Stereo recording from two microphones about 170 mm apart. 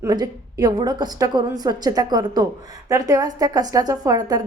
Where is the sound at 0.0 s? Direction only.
20° right (ahead or behind).